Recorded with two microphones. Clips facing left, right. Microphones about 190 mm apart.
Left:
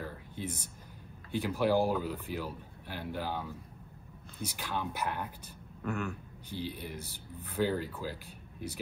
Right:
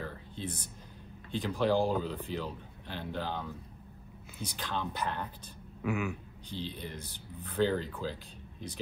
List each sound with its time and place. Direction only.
0.0 s a sound: 10° left (ahead or behind)
1.3 s speech: 10° left (ahead or behind)
4.6 s speech: 10° left (ahead or behind)
5.8 s speech: 5° right (ahead or behind)
6.5 s speech: 10° left (ahead or behind)
7.0 s speech: 15° right (ahead or behind)
7.4 s speech: 10° left (ahead or behind)